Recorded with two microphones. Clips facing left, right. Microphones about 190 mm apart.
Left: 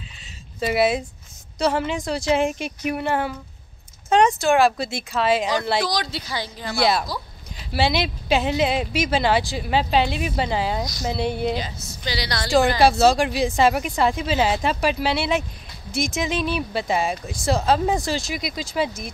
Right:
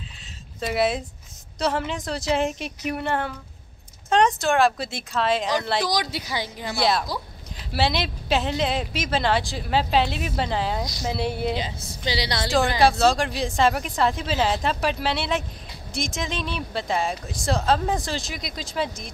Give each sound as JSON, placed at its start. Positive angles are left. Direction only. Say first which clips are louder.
{"t": 0.6, "sound": "speech", "louder": "left 3 dB", "side_deg": 5}
{"t": 5.9, "sound": "a woman's voice", "louder": "even", "side_deg": -15}
{"t": 6.7, "sound": "speech", "louder": "left 2 dB", "side_deg": 0}
{"t": 11.5, "sound": "a woman's voice", "louder": "left 1 dB", "side_deg": -25}
{"t": 12.4, "sound": "speech", "louder": "left 3 dB", "side_deg": 0}